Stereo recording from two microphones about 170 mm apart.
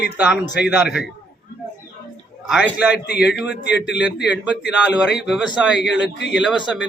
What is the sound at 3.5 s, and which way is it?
Speech, 80° left.